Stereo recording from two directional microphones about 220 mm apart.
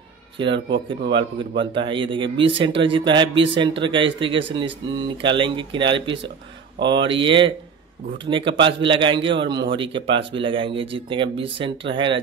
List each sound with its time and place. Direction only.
0.4 s a man's voice: 20° right (ahead or behind)